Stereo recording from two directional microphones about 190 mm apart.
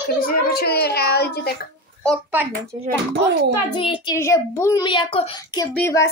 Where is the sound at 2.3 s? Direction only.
10° right (ahead or behind).